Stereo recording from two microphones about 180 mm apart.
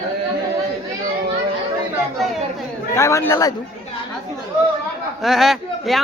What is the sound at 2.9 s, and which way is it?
Speech, 15° left (ahead or behind).